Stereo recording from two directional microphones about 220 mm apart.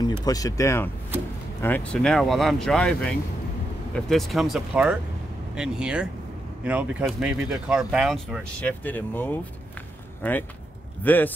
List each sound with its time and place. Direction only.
0.0 s speech: 15° left (ahead or behind)